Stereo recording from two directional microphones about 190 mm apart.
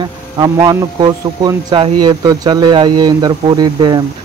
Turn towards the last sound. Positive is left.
turn(degrees=-20)  # may be behind; listen again after turning